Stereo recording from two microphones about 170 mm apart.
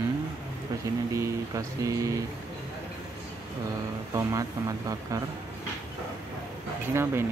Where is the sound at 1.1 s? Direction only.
20° right (ahead or behind).